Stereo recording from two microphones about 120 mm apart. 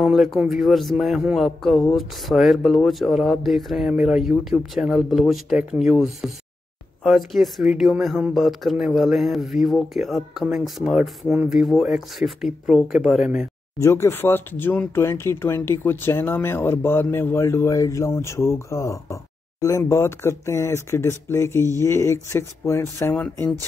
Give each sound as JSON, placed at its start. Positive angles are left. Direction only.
{"t": 0.0, "sound": "speech", "side_deg": 0}
{"t": 13.7, "sound": "speech", "side_deg": 25}